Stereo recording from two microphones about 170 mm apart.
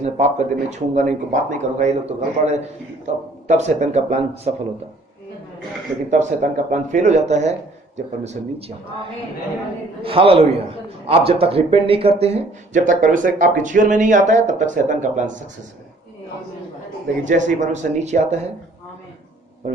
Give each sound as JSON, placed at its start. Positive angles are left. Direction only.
{"t": 0.0, "sound": "a man's voice", "side_deg": -40}
{"t": 6.1, "sound": "a man's voice", "side_deg": -50}
{"t": 10.0, "sound": "a man's voice", "side_deg": -30}
{"t": 17.2, "sound": "a man's voice", "side_deg": -45}